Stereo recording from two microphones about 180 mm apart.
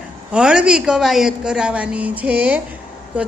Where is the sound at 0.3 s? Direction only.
5° right (ahead or behind).